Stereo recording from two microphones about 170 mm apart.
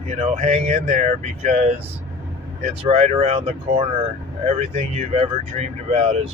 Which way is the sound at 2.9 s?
40° right (ahead or behind).